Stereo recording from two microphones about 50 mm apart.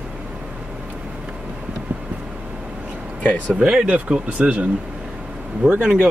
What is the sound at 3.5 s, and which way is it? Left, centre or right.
Speech, centre.